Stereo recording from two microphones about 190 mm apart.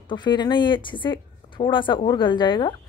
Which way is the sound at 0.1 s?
25° left (ahead or behind).